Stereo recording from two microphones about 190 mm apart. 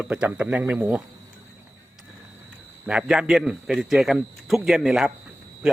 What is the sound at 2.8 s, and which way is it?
A man's voice, 5° right (ahead or behind).